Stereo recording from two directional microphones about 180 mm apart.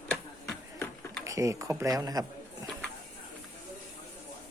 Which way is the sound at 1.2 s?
20° right (ahead or behind).